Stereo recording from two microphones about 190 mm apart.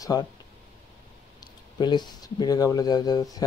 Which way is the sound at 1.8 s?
20° left (ahead or behind).